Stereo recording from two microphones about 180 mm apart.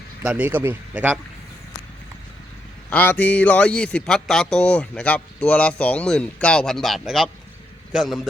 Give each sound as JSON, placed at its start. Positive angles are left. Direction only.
{"t": 0.2, "sound": "speech", "side_deg": -10}
{"t": 2.9, "sound": "a man's voice", "side_deg": 10}